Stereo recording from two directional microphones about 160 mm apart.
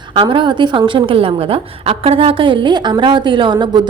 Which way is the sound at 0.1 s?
30° right (ahead or behind).